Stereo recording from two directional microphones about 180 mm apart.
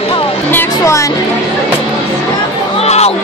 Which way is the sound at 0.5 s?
15° left (ahead or behind).